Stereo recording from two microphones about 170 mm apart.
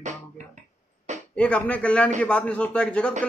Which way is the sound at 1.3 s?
5° left (ahead or behind).